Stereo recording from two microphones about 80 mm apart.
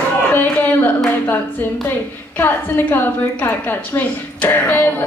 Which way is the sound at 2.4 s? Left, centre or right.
Left.